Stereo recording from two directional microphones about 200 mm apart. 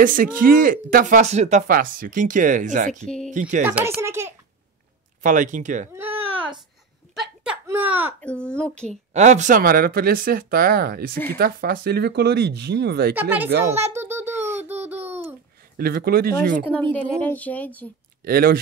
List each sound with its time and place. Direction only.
0.0 s speech: 45° right (ahead or behind)
3.6 s a child's voice: 10° right (ahead or behind)
5.2 s speech: 40° right (ahead or behind)
5.9 s baby cry: 10° right (ahead or behind)
7.6 s a sound: 10° right (ahead or behind)
8.2 s a child's voice: 5° left (ahead or behind)
9.1 s speech: 35° right (ahead or behind); by 13.1 s 55° right (ahead or behind)
13.1 s a child's voice: 10° right (ahead or behind)
13.7 s a sound: 10° right (ahead or behind)
15.8 s speech: 50° right (ahead or behind)
16.9 s a sound: 10° left (ahead or behind)
18.2 s speech: 50° right (ahead or behind)